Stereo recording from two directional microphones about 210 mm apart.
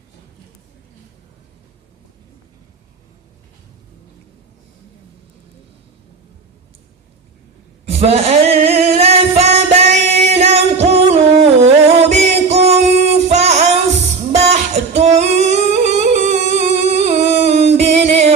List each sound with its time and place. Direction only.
7.9 s singing: 30° right (ahead or behind)